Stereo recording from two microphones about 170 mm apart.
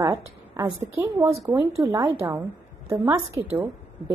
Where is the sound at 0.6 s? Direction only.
30° right (ahead or behind).